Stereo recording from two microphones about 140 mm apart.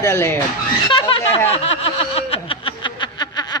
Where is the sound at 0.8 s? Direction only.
35° left (ahead or behind).